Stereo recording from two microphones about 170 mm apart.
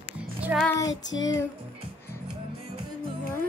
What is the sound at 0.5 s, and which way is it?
Music, 10° right (ahead or behind).